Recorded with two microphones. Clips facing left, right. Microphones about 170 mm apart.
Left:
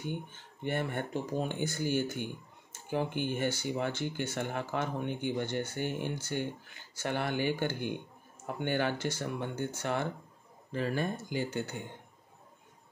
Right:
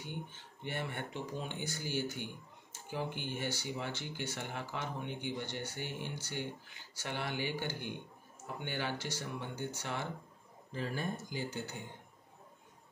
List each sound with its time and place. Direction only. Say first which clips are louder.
0.7 s speech: left 7 dB; 50° left (ahead or behind)
10.7 s speech: left 6 dB; 70° left (ahead or behind)